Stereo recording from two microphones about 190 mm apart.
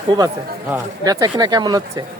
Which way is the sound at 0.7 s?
20° right (ahead or behind).